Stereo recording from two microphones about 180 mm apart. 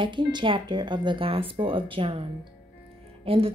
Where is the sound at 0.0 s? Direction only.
25° right (ahead or behind).